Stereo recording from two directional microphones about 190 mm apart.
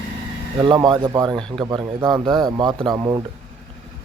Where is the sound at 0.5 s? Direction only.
25° right (ahead or behind).